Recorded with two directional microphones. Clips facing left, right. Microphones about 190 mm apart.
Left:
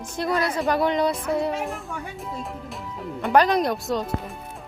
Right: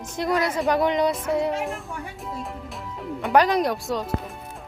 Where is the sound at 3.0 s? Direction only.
Centre (ahead or behind).